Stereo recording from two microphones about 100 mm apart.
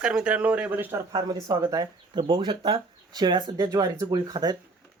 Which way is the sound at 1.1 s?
40° right (ahead or behind).